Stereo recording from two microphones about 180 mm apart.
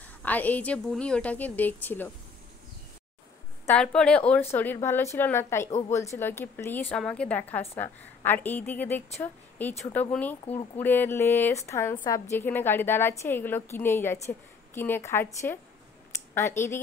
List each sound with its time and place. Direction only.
0.2 s a woman's voice: 10° left (ahead or behind)
3.6 s a woman's voice: 5° left (ahead or behind)